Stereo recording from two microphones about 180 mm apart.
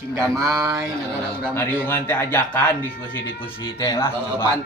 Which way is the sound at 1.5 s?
10° left (ahead or behind).